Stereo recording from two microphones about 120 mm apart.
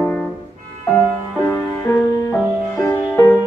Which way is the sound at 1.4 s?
15° left (ahead or behind).